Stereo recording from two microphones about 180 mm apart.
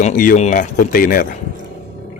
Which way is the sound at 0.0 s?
45° left (ahead or behind).